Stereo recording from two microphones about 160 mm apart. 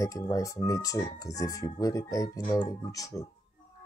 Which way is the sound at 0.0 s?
20° left (ahead or behind).